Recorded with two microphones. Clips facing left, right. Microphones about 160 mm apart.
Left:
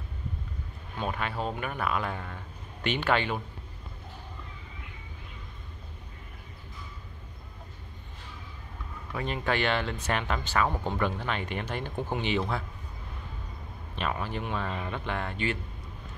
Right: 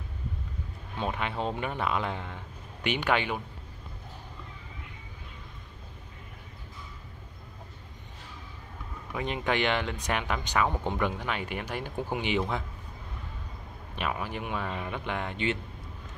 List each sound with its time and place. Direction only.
0.9 s speech: 20° right (ahead or behind)
9.1 s speech: 15° right (ahead or behind)
13.9 s speech: 10° right (ahead or behind)